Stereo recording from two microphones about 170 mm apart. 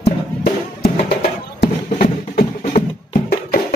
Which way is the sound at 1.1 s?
70° left (ahead or behind).